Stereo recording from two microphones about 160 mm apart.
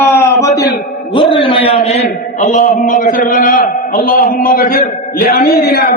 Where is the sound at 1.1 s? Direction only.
30° left (ahead or behind).